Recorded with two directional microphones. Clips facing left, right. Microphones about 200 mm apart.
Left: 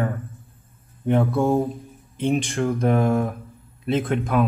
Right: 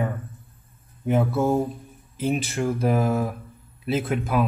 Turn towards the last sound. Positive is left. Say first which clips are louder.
# left 2 dB
turn(degrees=-5)  # may be behind; listen again after turning